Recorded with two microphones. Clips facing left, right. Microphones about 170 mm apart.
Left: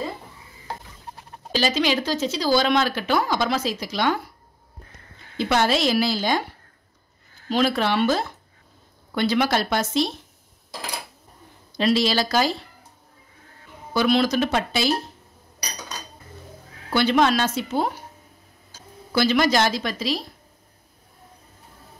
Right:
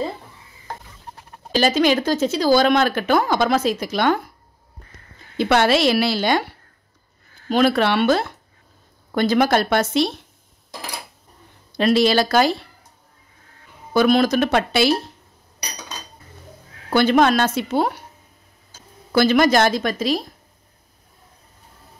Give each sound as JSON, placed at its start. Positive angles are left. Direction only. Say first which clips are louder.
{"t": 1.5, "sound": "speech", "louder": "right 5 dB", "side_deg": -50}
{"t": 5.4, "sound": "a woman's voice", "louder": "right 4 dB", "side_deg": -65}
{"t": 7.4, "sound": "a woman's voice", "louder": "right 4 dB", "side_deg": -55}
{"t": 9.1, "sound": "speech", "louder": "right 4 dB", "side_deg": -45}
{"t": 11.7, "sound": "speech", "louder": "right 4 dB", "side_deg": -55}
{"t": 13.9, "sound": "speech", "louder": "right 4 dB", "side_deg": -50}
{"t": 16.9, "sound": "speech", "louder": "right 4 dB", "side_deg": -50}
{"t": 19.1, "sound": "speech", "louder": "right 4 dB", "side_deg": -50}